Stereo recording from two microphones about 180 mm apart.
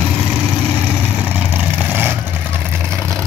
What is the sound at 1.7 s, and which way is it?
Vehicle, 10° right (ahead or behind).